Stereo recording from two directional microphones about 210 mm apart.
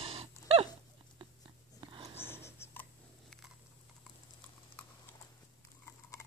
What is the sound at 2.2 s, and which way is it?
Writing, 10° left (ahead or behind).